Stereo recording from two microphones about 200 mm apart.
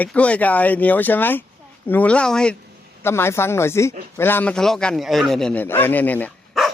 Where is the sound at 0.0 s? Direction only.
5° left (ahead or behind).